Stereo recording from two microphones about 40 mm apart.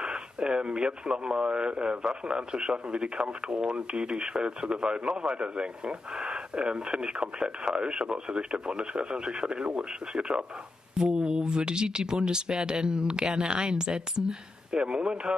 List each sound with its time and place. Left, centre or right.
0.0 s speech: right